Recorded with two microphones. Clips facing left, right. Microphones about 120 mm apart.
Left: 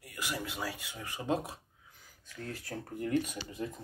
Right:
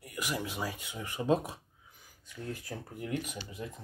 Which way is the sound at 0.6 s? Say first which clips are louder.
Right 2 dB; 15° right (ahead or behind).